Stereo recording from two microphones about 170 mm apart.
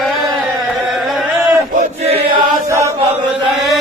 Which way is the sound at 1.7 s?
40° right (ahead or behind).